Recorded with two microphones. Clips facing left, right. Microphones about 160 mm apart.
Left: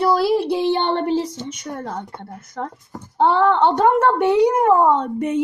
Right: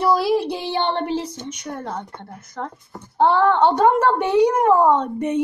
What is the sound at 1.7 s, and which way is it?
A woman's voice, 10° left (ahead or behind).